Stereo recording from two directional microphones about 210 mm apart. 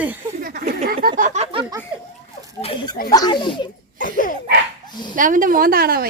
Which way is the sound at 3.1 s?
20° left (ahead or behind).